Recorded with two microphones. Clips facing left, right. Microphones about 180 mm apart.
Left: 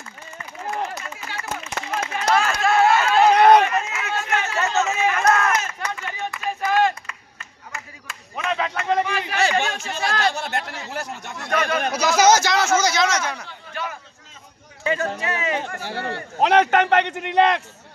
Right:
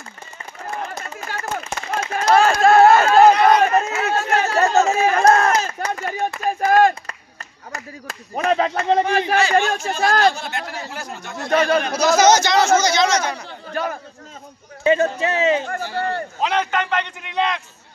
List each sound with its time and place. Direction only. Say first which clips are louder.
0.9 s a sound: right 3 dB; 45° right (ahead or behind)
2.3 s run: right 7 dB; 35° right (ahead or behind)
3.3 s run: left 2 dB; 60° left (ahead or behind)
3.6 s run: right 6 dB; 40° right (ahead or behind)
6.4 s clapping: right 5 dB; 45° right (ahead or behind)
9.8 s speech: right 6 dB; 45° right (ahead or behind)
11.3 s a man's voice: right 6 dB; 30° right (ahead or behind)
12.2 s speech: right 1 dB; 5° left (ahead or behind)
13.5 s a man's voice: right 6 dB; 40° right (ahead or behind)
14.8 s speech: right 7 dB; 25° right (ahead or behind)
15.8 s a man's voice: right 5 dB; 70° left (ahead or behind)